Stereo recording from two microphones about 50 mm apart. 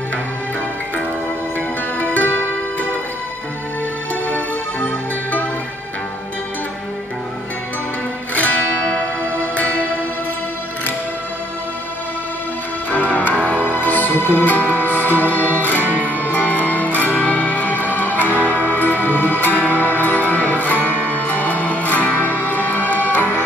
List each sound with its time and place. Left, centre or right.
2.0 s music: left
4.1 s music: left
8.4 s music: left
12.9 s music: left
15.8 s music: right
16.2 s music: left